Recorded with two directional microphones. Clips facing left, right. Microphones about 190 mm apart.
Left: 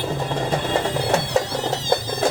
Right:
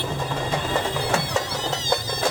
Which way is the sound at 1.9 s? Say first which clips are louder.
Left 4 dB; 25° left (ahead or behind).